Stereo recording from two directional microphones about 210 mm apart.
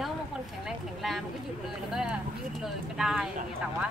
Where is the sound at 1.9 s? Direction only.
5° right (ahead or behind).